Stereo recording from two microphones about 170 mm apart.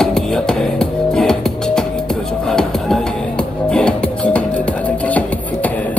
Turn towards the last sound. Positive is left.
turn(degrees=10)  # may be behind; listen again after turning